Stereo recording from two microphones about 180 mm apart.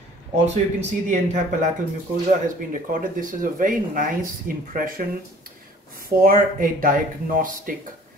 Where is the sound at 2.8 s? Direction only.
50° right (ahead or behind).